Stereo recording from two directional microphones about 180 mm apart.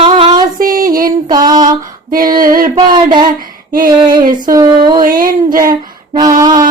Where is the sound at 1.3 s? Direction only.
20° right (ahead or behind).